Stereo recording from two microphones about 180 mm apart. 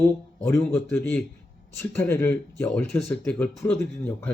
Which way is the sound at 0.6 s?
5° left (ahead or behind).